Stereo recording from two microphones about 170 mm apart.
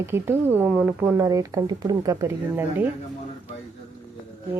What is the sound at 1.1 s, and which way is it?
Speech, 20° right (ahead or behind).